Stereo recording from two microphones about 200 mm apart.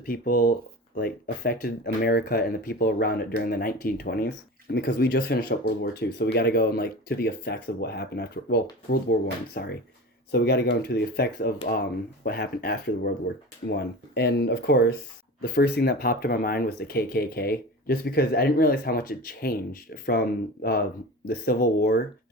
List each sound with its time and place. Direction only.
0.0 s speech: 45° left (ahead or behind)